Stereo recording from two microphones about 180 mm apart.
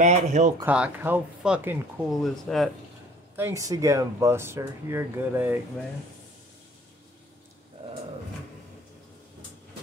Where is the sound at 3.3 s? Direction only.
15° right (ahead or behind).